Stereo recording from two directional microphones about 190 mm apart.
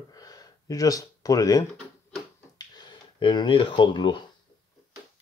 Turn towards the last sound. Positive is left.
turn(degrees=25)  # may be behind; listen again after turning